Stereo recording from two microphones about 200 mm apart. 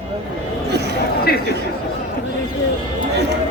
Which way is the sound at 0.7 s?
55° right (ahead or behind).